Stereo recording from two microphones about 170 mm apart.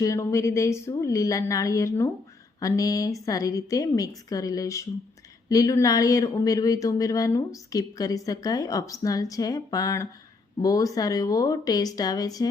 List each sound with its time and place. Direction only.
0.0 s speech: 20° left (ahead or behind)